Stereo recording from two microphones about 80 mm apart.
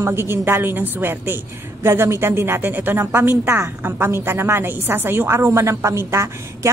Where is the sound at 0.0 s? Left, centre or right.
Right.